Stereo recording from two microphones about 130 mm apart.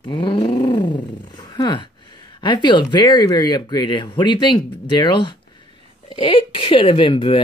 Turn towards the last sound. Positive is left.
turn(degrees=40)  # may be behind; listen again after turning